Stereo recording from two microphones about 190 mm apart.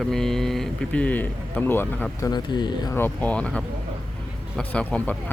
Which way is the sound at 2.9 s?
10° left (ahead or behind).